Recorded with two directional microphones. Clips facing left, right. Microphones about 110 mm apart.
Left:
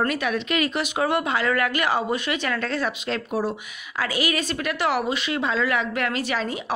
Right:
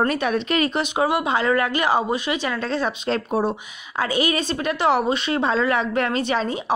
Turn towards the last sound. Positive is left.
turn(degrees=-30)  # may be behind; listen again after turning